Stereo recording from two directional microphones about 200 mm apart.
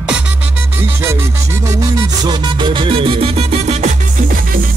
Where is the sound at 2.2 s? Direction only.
25° right (ahead or behind).